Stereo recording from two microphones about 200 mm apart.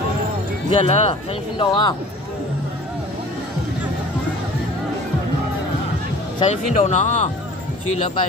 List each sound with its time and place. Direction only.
0.7 s speech: 30° left (ahead or behind)
6.4 s speech: 35° left (ahead or behind)